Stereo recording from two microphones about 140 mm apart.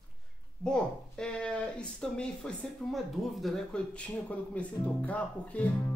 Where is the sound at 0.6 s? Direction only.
5° left (ahead or behind).